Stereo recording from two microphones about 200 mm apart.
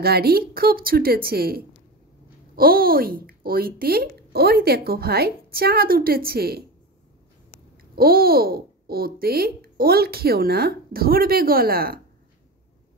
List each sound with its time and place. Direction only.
0.0 s speech: 50° right (ahead or behind)
7.9 s speech: 50° right (ahead or behind)